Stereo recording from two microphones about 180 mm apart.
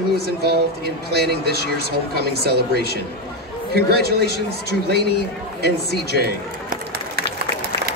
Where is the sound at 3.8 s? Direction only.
60° right (ahead or behind).